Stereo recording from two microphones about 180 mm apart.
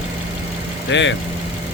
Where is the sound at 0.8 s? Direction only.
90° left.